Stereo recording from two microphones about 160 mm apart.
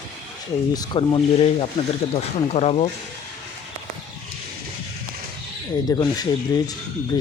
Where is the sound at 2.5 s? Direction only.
40° left (ahead or behind).